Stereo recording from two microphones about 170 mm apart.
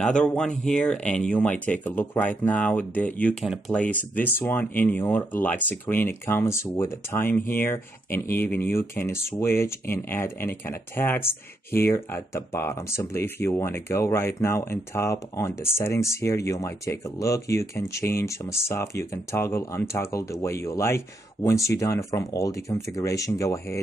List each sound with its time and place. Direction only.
0.0 s speech: 5° left (ahead or behind)